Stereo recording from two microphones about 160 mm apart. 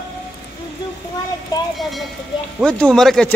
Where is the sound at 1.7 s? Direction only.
Centre (ahead or behind).